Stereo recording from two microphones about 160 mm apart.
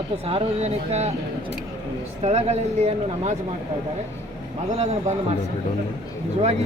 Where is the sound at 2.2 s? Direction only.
45° right (ahead or behind).